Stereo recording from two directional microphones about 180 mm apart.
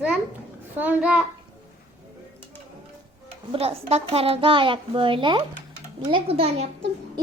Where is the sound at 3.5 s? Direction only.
35° right (ahead or behind).